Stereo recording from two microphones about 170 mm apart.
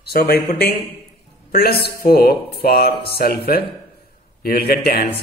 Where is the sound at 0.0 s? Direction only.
70° left (ahead or behind).